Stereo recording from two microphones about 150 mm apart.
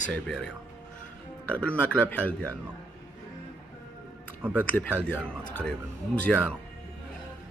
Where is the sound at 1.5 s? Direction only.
10° left (ahead or behind).